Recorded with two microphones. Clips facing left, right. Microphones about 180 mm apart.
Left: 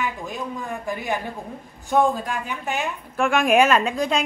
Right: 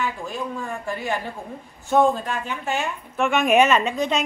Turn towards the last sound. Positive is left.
turn(degrees=0)  # may be behind; listen again after turning